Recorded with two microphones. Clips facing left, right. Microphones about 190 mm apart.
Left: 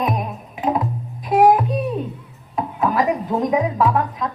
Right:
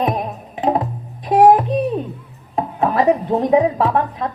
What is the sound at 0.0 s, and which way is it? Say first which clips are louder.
Music: right 3 dB; 30° right (ahead or behind).